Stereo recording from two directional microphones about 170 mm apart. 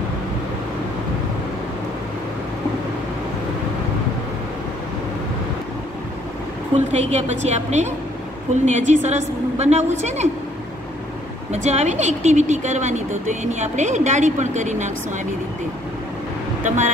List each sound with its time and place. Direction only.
6.9 s a woman's voice: 40° right (ahead or behind)
11.5 s speech: 40° right (ahead or behind)
16.6 s speech: 45° right (ahead or behind)